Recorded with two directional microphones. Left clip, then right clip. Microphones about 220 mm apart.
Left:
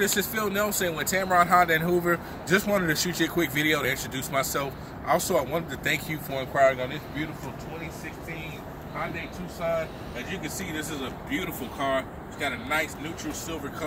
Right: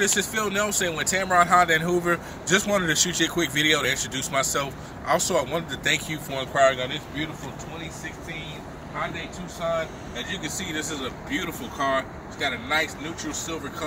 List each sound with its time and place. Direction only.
0.0 s speech: centre (ahead or behind)
10.9 s speech: 20° left (ahead or behind)